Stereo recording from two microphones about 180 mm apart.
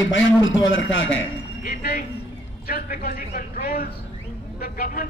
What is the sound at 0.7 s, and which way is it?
Speech, 90° left.